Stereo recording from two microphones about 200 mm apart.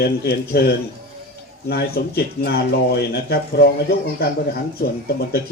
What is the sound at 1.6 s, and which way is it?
Speech, 50° left (ahead or behind).